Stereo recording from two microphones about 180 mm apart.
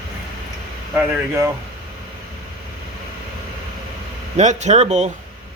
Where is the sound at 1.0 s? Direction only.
15° right (ahead or behind).